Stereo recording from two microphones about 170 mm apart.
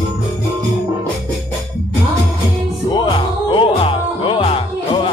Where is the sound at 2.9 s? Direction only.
25° left (ahead or behind).